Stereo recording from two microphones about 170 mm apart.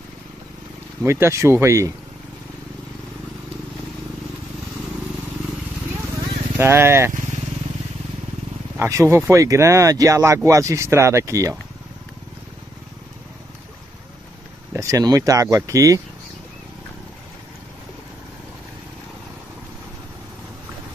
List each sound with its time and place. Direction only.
1.0 s speech: 15° right (ahead or behind)
6.6 s speech: 15° right (ahead or behind)
8.7 s speech: 15° right (ahead or behind)
14.7 s speech: 20° right (ahead or behind)